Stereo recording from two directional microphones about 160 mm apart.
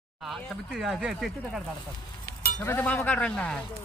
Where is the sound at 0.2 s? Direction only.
Centre (ahead or behind).